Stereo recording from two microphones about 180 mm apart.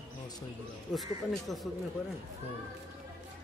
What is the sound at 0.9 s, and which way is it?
Speech, centre (ahead or behind).